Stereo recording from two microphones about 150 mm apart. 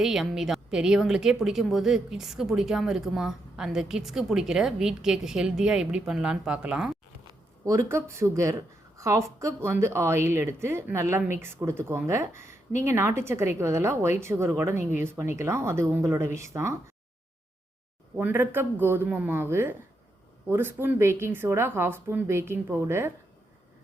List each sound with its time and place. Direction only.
0.0 s a woman's voice: centre (ahead or behind)
7.3 s a woman's voice: 20° right (ahead or behind)
18.2 s a woman's voice: 15° right (ahead or behind)